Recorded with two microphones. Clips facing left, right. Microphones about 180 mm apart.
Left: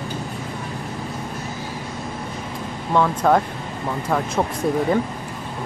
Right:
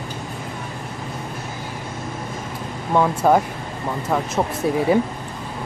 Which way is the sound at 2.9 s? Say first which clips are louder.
Right 1 dB; 10° right (ahead or behind).